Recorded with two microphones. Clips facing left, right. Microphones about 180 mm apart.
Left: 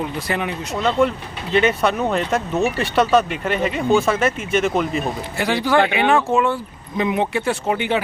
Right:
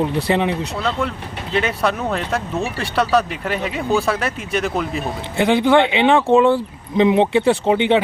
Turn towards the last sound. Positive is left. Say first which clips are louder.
# right 5 dB
turn(degrees=-25)  # may be behind; listen again after turning